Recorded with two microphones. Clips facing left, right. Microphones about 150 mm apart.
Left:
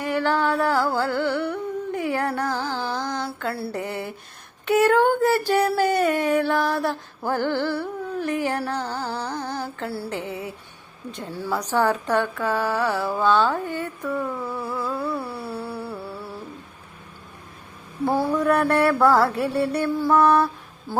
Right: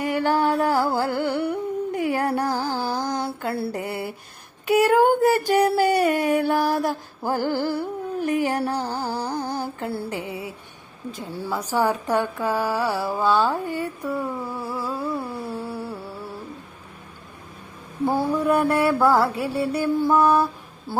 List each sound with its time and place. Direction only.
0.0 s music: 15° right (ahead or behind)
1.9 s a sound: 10° right (ahead or behind)
2.6 s music: 35° right (ahead or behind)
3.5 s mantra: 25° right (ahead or behind)
3.8 s mantra: 10° right (ahead or behind)
8.7 s music: 10° right (ahead or behind)
11.3 s a woman's voice: 15° right (ahead or behind)
18.0 s mantra: 15° right (ahead or behind)